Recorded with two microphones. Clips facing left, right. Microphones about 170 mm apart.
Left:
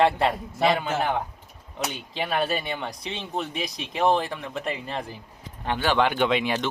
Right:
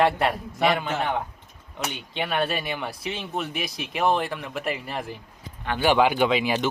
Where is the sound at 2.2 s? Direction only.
Centre (ahead or behind).